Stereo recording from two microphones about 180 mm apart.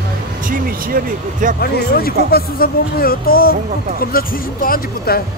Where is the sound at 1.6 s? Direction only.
60° left (ahead or behind).